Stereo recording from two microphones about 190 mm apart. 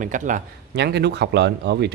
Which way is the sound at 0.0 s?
40° right (ahead or behind).